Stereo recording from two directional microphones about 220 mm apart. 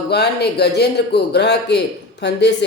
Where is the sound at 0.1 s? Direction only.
50° left (ahead or behind).